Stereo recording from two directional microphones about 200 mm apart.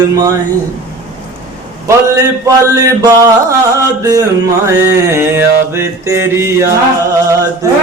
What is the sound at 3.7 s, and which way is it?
Mantra, 15° right (ahead or behind).